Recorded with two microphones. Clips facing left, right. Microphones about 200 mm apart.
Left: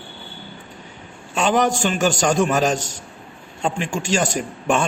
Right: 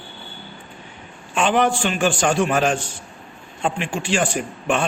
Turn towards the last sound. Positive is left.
turn(degrees=40)  # may be behind; listen again after turning